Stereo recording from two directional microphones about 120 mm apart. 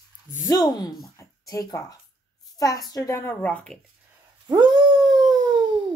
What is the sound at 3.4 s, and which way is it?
Speech, 10° left (ahead or behind).